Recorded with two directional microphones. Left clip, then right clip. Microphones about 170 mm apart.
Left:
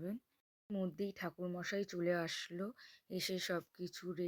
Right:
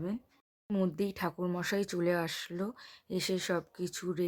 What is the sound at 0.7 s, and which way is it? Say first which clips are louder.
Speech: right 8 dB; 10° left (ahead or behind).